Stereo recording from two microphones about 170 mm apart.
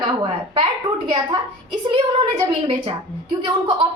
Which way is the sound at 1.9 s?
30° right (ahead or behind).